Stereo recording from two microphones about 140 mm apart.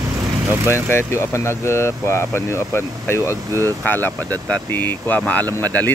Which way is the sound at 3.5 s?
20° right (ahead or behind).